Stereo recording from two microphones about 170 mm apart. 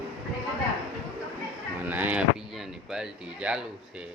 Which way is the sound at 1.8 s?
10° right (ahead or behind).